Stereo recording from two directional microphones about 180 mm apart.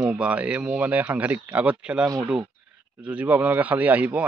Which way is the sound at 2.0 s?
20° right (ahead or behind).